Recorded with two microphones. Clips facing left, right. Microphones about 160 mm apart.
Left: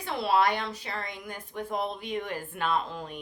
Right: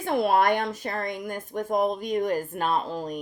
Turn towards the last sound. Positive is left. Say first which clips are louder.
# right 4 dB
turn(degrees=-40)  # may be behind; listen again after turning